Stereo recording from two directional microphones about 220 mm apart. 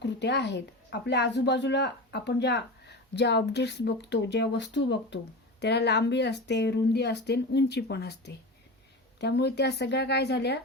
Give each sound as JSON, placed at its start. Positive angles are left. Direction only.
{"t": 0.0, "sound": "speech", "side_deg": 50}